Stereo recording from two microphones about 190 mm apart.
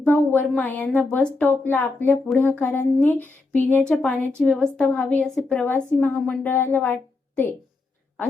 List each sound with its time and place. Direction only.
0.0 s a woman's voice: 10° left (ahead or behind)